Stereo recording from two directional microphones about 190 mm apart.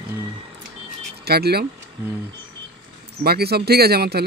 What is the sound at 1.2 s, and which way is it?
Speech, 55° right (ahead or behind).